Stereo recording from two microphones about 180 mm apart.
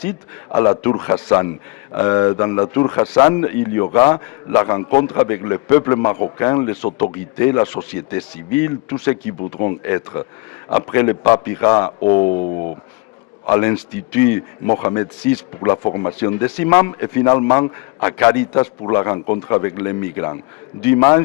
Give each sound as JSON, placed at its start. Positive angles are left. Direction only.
{"t": 0.5, "sound": "a man's voice", "side_deg": 15}
{"t": 12.2, "sound": "speech", "side_deg": 35}
{"t": 13.4, "sound": "a man's voice", "side_deg": 15}
{"t": 15.8, "sound": "a man's voice", "side_deg": 20}